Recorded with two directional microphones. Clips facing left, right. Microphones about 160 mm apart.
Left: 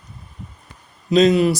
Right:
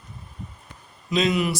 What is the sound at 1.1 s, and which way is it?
Speech, 40° left (ahead or behind).